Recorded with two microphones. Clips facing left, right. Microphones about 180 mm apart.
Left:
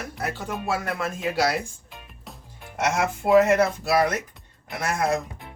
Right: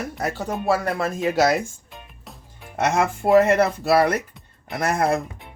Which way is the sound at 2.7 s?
55° right (ahead or behind).